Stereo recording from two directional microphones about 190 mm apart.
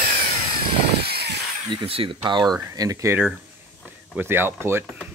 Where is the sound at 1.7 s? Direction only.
25° right (ahead or behind).